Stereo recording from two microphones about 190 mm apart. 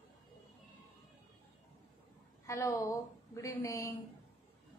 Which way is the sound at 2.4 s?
15° left (ahead or behind).